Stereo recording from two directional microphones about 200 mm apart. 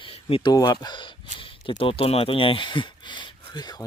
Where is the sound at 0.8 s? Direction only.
25° left (ahead or behind).